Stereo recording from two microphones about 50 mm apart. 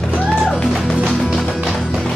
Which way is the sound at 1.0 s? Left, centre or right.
Centre.